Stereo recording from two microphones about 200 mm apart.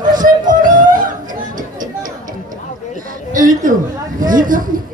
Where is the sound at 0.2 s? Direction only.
40° right (ahead or behind).